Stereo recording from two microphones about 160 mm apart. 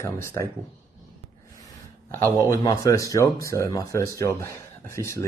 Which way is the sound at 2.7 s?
20° left (ahead or behind).